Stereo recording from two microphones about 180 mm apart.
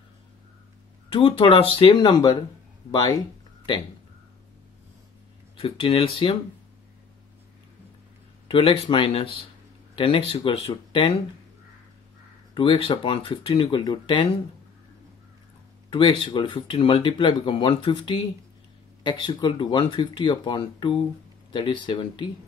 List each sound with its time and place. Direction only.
1.1 s speech: 30° left (ahead or behind)
5.6 s speech: 30° left (ahead or behind)
8.5 s speech: 30° left (ahead or behind)
12.5 s speech: 30° left (ahead or behind)
15.9 s speech: 30° left (ahead or behind)